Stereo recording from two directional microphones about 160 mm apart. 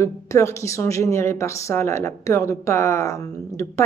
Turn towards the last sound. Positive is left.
turn(degrees=15)  # may be behind; listen again after turning